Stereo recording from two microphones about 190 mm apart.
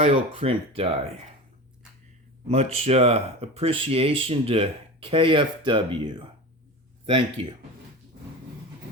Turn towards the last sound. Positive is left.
turn(degrees=-25)  # may be behind; listen again after turning